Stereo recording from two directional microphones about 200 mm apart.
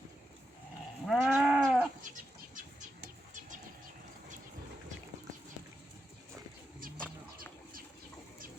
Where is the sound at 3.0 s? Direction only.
40° right (ahead or behind).